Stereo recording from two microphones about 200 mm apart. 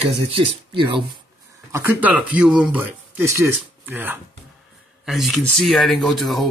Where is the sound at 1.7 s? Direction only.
10° right (ahead or behind).